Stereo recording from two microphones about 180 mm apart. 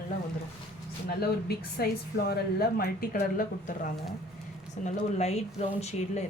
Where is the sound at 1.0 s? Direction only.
60° left (ahead or behind); by 5.3 s 40° left (ahead or behind).